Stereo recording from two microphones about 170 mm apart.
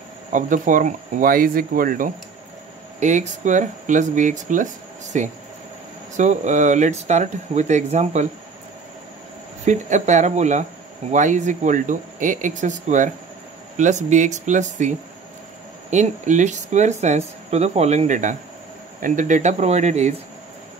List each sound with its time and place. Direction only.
0.3 s speech: 50° right (ahead or behind)
3.0 s speech: 45° right (ahead or behind)
9.7 s speech: 45° right (ahead or behind)